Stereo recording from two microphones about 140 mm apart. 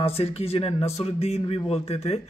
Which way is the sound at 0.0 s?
45° left (ahead or behind).